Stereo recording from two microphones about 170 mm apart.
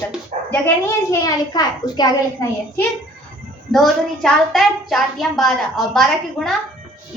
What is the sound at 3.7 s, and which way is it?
Speech, centre (ahead or behind).